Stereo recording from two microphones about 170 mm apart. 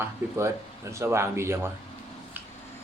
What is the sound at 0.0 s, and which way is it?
Speech, 15° right (ahead or behind).